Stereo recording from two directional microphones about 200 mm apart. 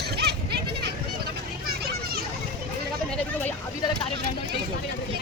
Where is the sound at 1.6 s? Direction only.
50° right (ahead or behind).